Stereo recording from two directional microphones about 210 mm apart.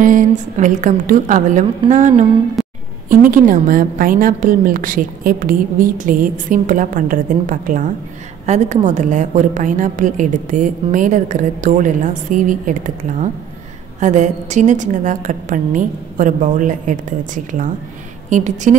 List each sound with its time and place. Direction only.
0.0 s a woman's voice: 40° right (ahead or behind)
2.6 s music: centre (ahead or behind)
3.1 s a woman's voice: 40° right (ahead or behind)